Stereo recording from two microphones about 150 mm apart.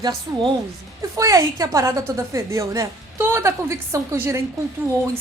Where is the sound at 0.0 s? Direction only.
25° right (ahead or behind).